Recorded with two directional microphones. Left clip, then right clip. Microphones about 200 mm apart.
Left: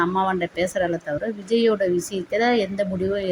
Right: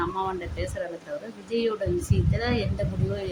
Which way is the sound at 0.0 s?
20° left (ahead or behind).